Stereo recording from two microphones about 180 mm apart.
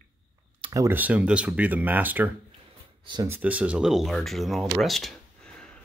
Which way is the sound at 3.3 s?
10° right (ahead or behind).